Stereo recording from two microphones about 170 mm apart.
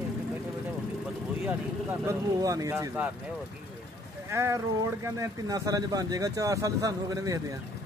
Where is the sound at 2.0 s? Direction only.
20° right (ahead or behind).